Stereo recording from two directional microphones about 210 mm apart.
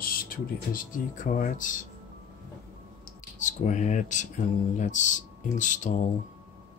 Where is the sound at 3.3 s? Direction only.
35° left (ahead or behind).